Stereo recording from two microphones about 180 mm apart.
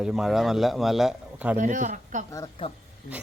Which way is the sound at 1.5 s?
45° right (ahead or behind).